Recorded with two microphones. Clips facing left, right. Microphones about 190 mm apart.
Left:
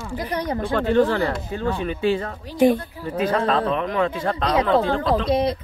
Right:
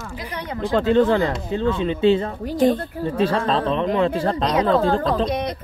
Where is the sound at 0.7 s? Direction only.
20° right (ahead or behind).